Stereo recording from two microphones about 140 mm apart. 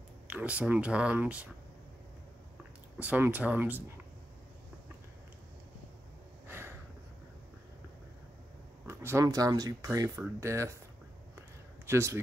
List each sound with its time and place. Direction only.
0.3 s speech: 10° right (ahead or behind)
3.0 s speech: 10° right (ahead or behind)
6.4 s a sound: 15° right (ahead or behind)
8.8 s speech: 20° right (ahead or behind)
11.8 s speech: 20° right (ahead or behind)